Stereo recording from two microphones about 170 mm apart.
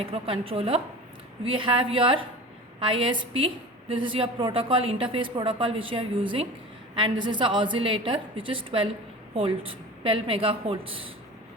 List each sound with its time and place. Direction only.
0.0 s a woman's voice: 35° right (ahead or behind)